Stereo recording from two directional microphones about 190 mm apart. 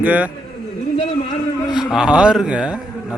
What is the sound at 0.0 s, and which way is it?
Speech, 10° right (ahead or behind).